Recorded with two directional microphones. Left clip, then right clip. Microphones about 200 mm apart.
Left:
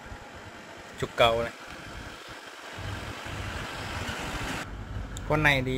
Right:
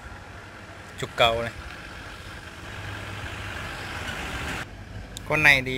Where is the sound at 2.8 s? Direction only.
60° left (ahead or behind).